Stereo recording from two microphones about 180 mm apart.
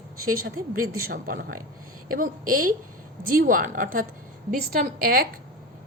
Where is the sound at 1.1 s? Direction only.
50° right (ahead or behind).